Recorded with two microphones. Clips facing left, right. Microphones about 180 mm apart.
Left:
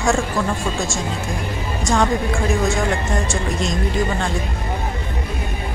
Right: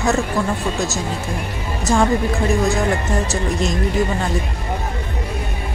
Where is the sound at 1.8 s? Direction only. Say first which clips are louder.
Right 2 dB; 10° right (ahead or behind).